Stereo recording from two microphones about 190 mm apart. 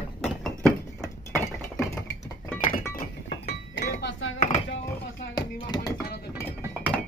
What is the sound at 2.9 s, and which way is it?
Music, 50° left (ahead or behind).